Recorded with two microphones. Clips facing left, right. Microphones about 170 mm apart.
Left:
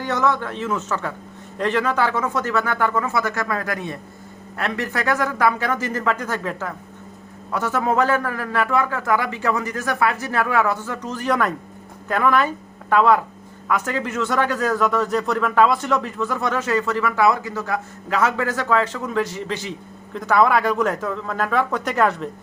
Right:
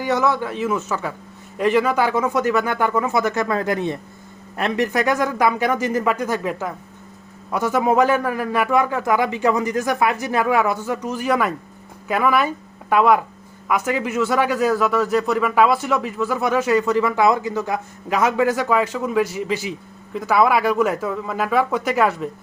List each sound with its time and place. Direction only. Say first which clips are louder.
0.0 s a man's voice: right 2 dB; 10° right (ahead or behind)